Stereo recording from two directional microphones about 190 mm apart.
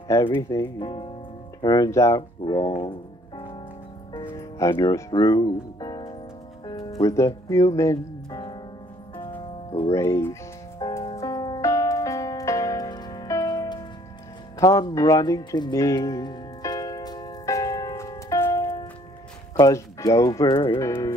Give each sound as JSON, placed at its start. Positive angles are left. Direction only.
{"t": 0.1, "sound": "speech", "side_deg": 15}
{"t": 2.8, "sound": "music", "side_deg": 25}
{"t": 4.2, "sound": "speech", "side_deg": 15}
{"t": 6.6, "sound": "music", "side_deg": 25}
{"t": 7.0, "sound": "speech", "side_deg": 15}
{"t": 9.1, "sound": "music", "side_deg": 25}
{"t": 9.9, "sound": "speech", "side_deg": 15}
{"t": 10.8, "sound": "music", "side_deg": 20}
{"t": 19.5, "sound": "speech", "side_deg": 15}